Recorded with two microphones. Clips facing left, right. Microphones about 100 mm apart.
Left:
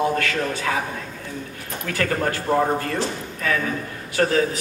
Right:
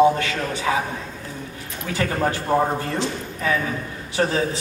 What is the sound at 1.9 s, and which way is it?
Speech, 15° right (ahead or behind).